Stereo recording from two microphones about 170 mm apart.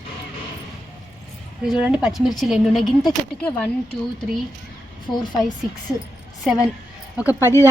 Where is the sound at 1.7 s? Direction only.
5° right (ahead or behind).